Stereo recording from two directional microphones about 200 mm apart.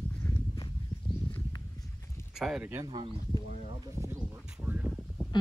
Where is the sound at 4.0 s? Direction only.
10° right (ahead or behind).